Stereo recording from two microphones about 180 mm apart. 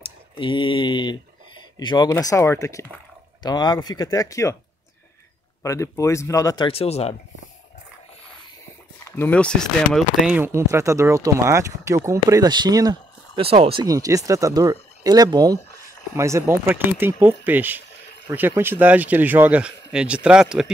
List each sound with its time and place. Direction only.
0.0 s speech: 30° left (ahead or behind)
5.6 s speech: 15° left (ahead or behind); by 7.2 s 35° left (ahead or behind)
9.1 s speech: 10° left (ahead or behind)
10.3 s speech: 15° right (ahead or behind)
13.4 s speech: 30° right (ahead or behind); by 20.7 s 5° right (ahead or behind)